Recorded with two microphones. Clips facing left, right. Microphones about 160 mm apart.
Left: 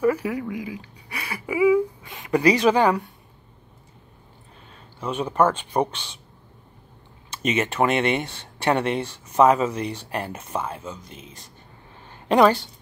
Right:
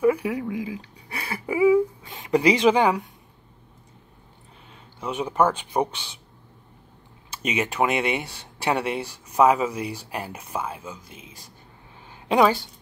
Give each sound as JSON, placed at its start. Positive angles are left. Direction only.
{"t": 0.0, "sound": "a sound", "side_deg": -15}
{"t": 5.0, "sound": "speech", "side_deg": -15}
{"t": 7.2, "sound": "a woman's voice", "side_deg": -10}